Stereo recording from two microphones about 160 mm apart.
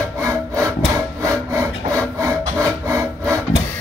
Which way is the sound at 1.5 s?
20° right (ahead or behind).